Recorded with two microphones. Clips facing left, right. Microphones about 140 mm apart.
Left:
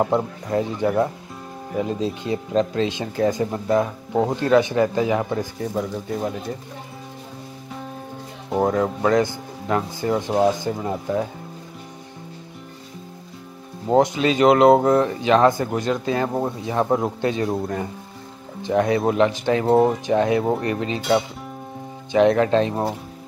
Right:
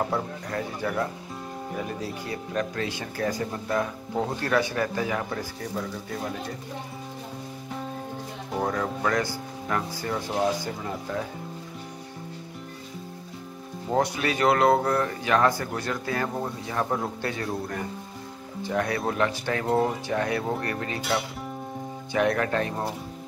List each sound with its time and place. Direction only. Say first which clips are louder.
0.0 s speech: left 7 dB; 20° left (ahead or behind)
8.6 s speech: left 7 dB; 25° left (ahead or behind)
13.9 s speech: left 8 dB; 20° left (ahead or behind)